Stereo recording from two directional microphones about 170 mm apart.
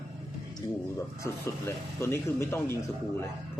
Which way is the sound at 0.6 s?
25° left (ahead or behind).